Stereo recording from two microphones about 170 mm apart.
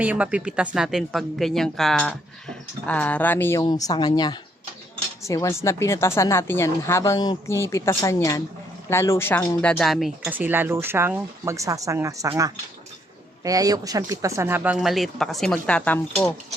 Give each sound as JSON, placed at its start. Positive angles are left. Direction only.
{"t": 0.0, "sound": "a woman's voice", "side_deg": -10}
{"t": 3.6, "sound": "a woman's voice", "side_deg": 25}
{"t": 13.4, "sound": "speech", "side_deg": -20}